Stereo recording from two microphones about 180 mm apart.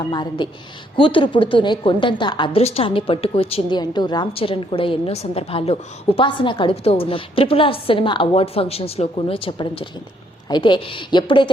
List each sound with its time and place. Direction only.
0.1 s a woman's voice: 25° left (ahead or behind)